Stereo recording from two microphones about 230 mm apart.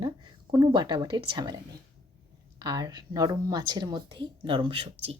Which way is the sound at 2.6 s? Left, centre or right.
Centre.